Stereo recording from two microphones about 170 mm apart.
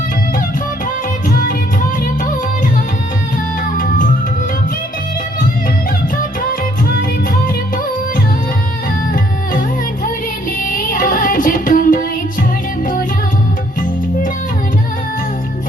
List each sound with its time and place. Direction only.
3.8 s music: 55° left (ahead or behind)
9.1 s music: 55° left (ahead or behind)